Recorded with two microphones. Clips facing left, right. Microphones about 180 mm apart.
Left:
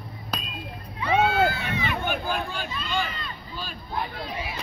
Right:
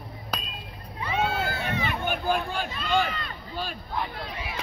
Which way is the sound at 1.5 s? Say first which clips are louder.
Even; 45° right (ahead or behind).